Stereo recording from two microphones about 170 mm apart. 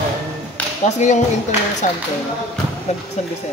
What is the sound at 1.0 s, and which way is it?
Speech, 45° left (ahead or behind).